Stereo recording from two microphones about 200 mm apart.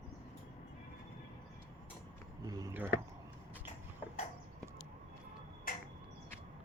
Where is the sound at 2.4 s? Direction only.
15° right (ahead or behind).